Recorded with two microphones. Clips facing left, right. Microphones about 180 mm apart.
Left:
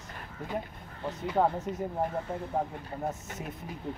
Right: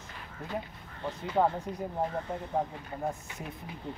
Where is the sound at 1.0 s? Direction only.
5° left (ahead or behind).